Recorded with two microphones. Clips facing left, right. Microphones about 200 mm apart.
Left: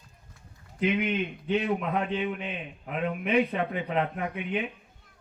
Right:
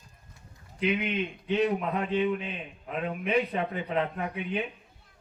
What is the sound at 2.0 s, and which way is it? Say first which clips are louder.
Speech: right 2 dB; 40° right (ahead or behind).